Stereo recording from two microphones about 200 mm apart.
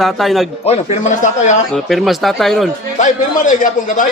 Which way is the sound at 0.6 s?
35° left (ahead or behind).